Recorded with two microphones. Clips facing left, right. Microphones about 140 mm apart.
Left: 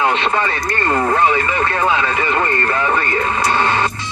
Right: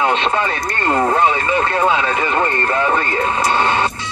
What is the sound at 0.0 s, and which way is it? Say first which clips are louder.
Speech: even; 20° right (ahead or behind).